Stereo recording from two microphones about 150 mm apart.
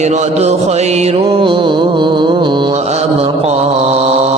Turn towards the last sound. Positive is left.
turn(degrees=-45)  # may be behind; listen again after turning